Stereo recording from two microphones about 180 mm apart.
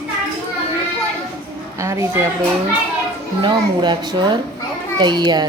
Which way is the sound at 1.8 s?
15° right (ahead or behind).